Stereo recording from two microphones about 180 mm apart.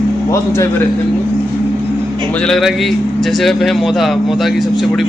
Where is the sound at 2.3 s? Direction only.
5° left (ahead or behind).